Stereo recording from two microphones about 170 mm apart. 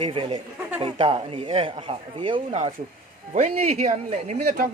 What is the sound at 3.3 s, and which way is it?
Speech, 45° right (ahead or behind).